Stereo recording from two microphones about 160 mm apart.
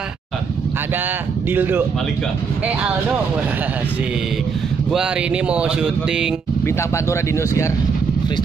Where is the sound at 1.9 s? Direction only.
Centre (ahead or behind).